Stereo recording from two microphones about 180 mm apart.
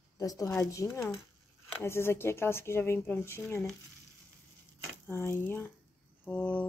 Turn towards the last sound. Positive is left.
turn(degrees=10)  # may be behind; listen again after turning